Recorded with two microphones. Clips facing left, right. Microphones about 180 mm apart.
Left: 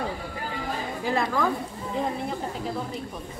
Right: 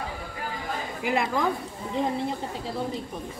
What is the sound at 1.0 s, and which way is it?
Speech, 20° right (ahead or behind).